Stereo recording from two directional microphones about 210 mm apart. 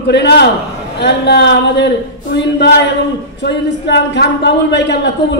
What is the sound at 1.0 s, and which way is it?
A man's voice, 55° left (ahead or behind).